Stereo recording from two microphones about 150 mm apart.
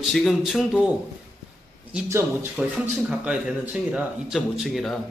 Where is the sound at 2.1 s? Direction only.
15° right (ahead or behind).